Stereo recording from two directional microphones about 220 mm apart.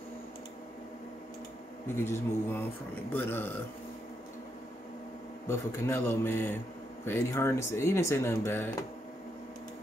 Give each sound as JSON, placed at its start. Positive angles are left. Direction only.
{"t": 2.0, "sound": "speech", "side_deg": 10}
{"t": 5.5, "sound": "speech", "side_deg": 10}